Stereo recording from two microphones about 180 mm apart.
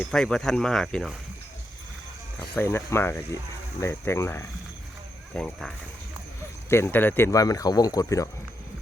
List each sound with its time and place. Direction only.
0.0 s speech: 5° left (ahead or behind)
2.4 s speech: 10° left (ahead or behind)
6.7 s speech: 15° left (ahead or behind)